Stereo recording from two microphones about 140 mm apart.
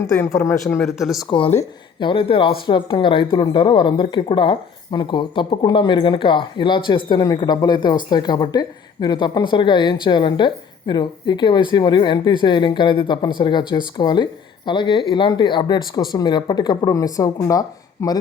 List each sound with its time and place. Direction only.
0.2 s speech: 20° left (ahead or behind)
0.9 s speech: centre (ahead or behind)
1.3 s speech: 45° left (ahead or behind); by 18.2 s 25° left (ahead or behind)